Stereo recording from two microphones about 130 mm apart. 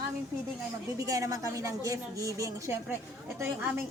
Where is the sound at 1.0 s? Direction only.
25° right (ahead or behind).